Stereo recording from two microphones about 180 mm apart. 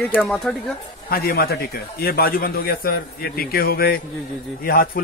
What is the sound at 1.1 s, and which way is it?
A man's voice, 55° left (ahead or behind).